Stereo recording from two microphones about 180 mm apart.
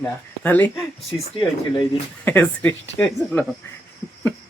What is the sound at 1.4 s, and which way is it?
Speech, 25° left (ahead or behind).